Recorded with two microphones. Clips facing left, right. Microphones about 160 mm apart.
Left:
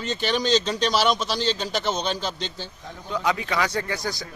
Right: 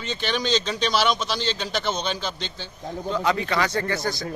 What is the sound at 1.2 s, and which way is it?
Speech, 40° left (ahead or behind).